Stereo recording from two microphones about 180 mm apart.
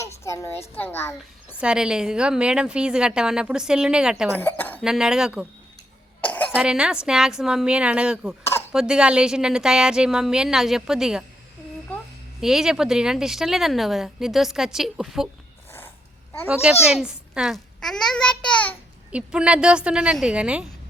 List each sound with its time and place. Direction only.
0.0 s a sound: 15° left (ahead or behind)
0.8 s a child's voice: 10° left (ahead or behind)
1.6 s speech: 5° right (ahead or behind)
4.3 s cough: 10° left (ahead or behind)
4.8 s speech: 5° right (ahead or behind)
6.2 s cough: 10° left (ahead or behind)
6.6 s speech: 5° right (ahead or behind)
12.4 s speech: centre (ahead or behind)
16.9 s speech: 5° right (ahead or behind)
19.1 s speech: 5° right (ahead or behind)